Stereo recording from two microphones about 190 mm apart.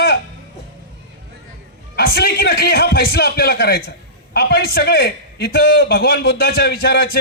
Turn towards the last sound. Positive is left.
turn(degrees=55)  # may be behind; listen again after turning